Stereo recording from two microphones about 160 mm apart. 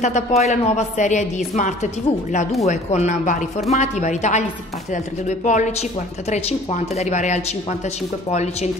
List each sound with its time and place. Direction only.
0.0 s speech: 45° left (ahead or behind)